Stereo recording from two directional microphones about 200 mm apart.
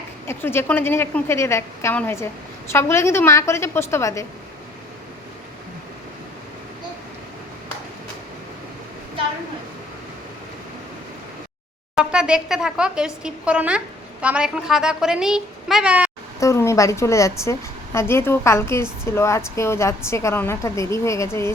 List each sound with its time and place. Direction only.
0.3 s a woman's voice: 10° left (ahead or behind)
11.9 s speech: 5° right (ahead or behind)
16.4 s a woman's voice: 15° left (ahead or behind)